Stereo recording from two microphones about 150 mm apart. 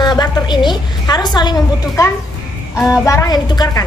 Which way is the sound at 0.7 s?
25° left (ahead or behind).